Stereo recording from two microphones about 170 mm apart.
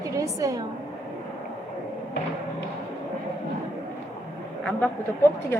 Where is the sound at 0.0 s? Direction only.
20° right (ahead or behind).